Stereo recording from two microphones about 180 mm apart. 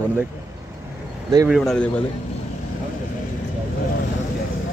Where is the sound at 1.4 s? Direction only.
Centre (ahead or behind).